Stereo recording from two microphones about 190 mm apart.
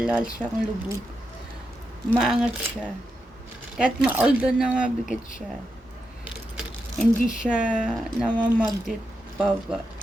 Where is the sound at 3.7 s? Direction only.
5° right (ahead or behind).